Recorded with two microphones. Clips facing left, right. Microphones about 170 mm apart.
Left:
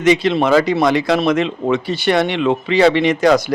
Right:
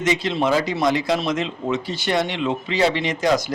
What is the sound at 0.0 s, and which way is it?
Speech, 65° left (ahead or behind).